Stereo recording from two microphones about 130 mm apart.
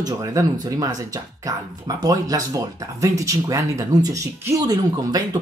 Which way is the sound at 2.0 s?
25° right (ahead or behind).